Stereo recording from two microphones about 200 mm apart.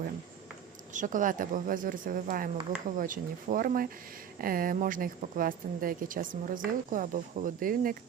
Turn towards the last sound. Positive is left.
turn(degrees=-45)  # may be behind; listen again after turning